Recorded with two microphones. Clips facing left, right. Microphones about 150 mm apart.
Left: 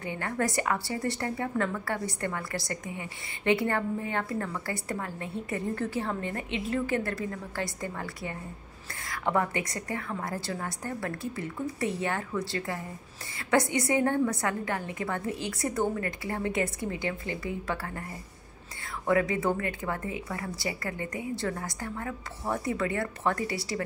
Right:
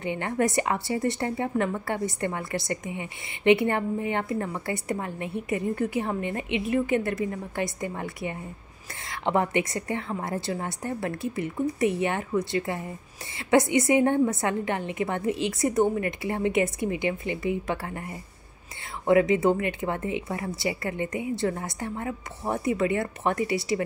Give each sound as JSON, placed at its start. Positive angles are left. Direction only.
{"t": 0.0, "sound": "a woman's voice", "side_deg": -20}
{"t": 19.0, "sound": "a woman's voice", "side_deg": -20}